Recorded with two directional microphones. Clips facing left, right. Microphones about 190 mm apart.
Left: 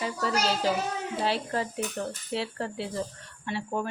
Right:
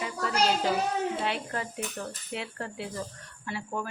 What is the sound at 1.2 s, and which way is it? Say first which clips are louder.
Speech: left 3 dB; 35° left (ahead or behind).